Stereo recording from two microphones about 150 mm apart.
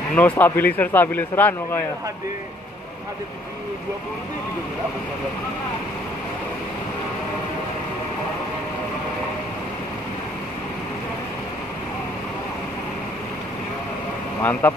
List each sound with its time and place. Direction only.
0.1 s a man's voice: 10° left (ahead or behind)
14.4 s a man's voice: 10° left (ahead or behind)